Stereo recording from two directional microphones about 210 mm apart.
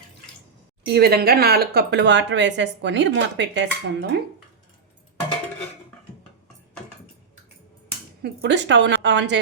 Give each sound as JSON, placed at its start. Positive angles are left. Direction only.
{"t": 0.9, "sound": "speech", "side_deg": -50}
{"t": 8.2, "sound": "speech", "side_deg": -55}